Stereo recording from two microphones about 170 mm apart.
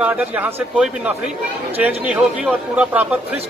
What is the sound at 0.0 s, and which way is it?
A man's voice, 10° right (ahead or behind).